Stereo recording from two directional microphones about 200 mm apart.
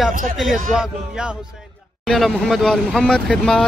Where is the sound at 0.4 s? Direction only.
Centre (ahead or behind).